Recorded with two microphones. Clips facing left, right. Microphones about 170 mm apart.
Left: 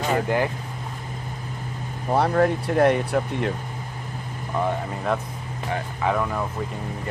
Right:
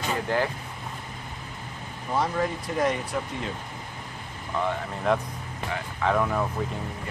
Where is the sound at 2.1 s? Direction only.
60° left (ahead or behind).